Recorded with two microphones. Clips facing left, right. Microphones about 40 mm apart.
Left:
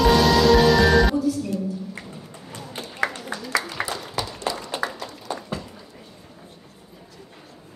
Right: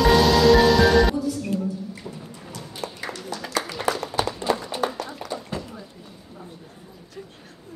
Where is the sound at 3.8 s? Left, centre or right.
Left.